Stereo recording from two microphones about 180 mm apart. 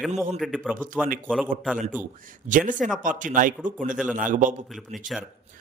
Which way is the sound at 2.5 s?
45° right (ahead or behind).